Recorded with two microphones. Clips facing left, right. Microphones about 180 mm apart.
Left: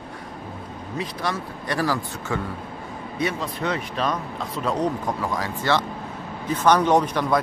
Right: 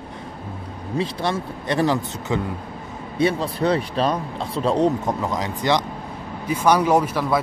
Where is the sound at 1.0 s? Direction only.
25° right (ahead or behind).